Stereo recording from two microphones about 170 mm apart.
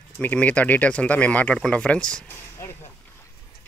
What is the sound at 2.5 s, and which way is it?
Vehicle, 15° left (ahead or behind).